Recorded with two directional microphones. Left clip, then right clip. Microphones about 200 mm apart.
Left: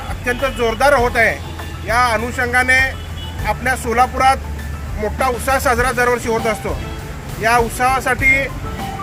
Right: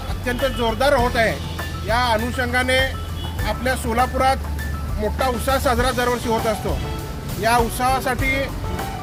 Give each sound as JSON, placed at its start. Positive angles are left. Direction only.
{"t": 0.3, "sound": "speech", "side_deg": 0}
{"t": 7.4, "sound": "speech", "side_deg": 0}